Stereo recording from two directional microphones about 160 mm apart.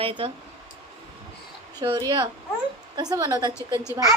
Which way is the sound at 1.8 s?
25° right (ahead or behind).